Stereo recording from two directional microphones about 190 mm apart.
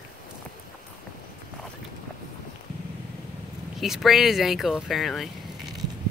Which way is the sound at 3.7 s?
Centre (ahead or behind).